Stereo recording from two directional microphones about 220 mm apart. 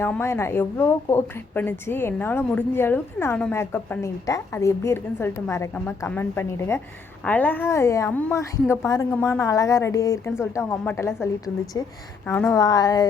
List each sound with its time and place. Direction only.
0.0 s a woman's voice: 10° left (ahead or behind)